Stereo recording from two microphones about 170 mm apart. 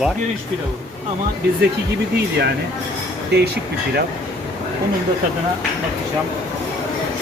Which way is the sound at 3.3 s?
70° right (ahead or behind).